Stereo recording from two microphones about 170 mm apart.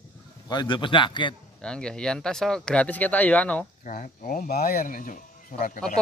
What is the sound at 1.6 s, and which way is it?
Speech, 5° left (ahead or behind).